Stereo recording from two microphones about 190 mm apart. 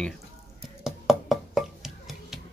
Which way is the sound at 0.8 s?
Centre (ahead or behind).